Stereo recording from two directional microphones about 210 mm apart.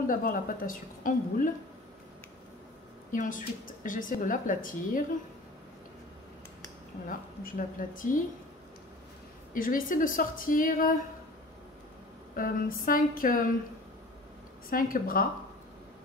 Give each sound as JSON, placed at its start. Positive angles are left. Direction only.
{"t": 0.0, "sound": "a woman's voice", "side_deg": 40}
{"t": 3.1, "sound": "a woman's voice", "side_deg": 40}
{"t": 7.1, "sound": "a woman's voice", "side_deg": 40}
{"t": 9.5, "sound": "a woman's voice", "side_deg": 40}
{"t": 12.4, "sound": "a woman's voice", "side_deg": 40}
{"t": 14.7, "sound": "speech", "side_deg": 45}